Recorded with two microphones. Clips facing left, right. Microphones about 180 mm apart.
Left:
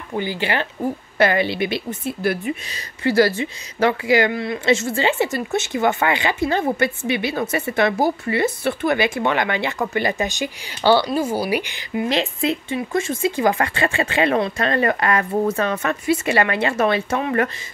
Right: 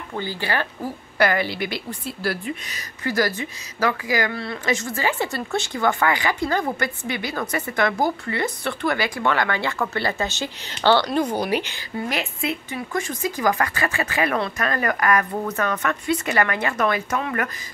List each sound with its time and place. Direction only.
0.1 s speech: 15° left (ahead or behind)
12.1 s speech: 35° left (ahead or behind)